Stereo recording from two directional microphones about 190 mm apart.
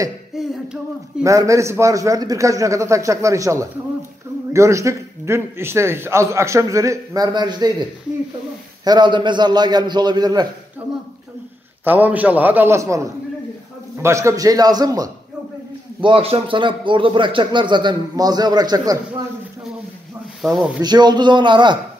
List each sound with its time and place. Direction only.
0.3 s a sound: centre (ahead or behind)
1.2 s a man's voice: 15° right (ahead or behind)
8.8 s a man's voice: 25° right (ahead or behind)
11.8 s a man's voice: 10° right (ahead or behind)
20.4 s speech: centre (ahead or behind)
20.8 s a man's voice: 20° right (ahead or behind)